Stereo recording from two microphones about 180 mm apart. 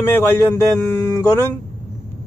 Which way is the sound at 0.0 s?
15° left (ahead or behind).